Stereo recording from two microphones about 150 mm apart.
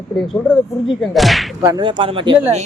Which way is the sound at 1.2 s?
Centre (ahead or behind).